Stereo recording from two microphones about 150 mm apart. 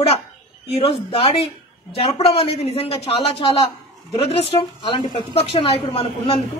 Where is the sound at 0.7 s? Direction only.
40° left (ahead or behind).